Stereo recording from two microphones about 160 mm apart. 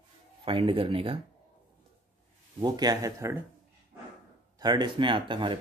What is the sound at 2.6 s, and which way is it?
Speech, 25° right (ahead or behind).